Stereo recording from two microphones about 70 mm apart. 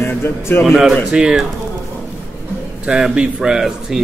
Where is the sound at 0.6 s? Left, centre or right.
Centre.